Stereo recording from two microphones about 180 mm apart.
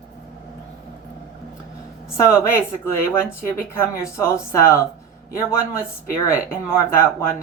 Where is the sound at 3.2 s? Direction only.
10° left (ahead or behind).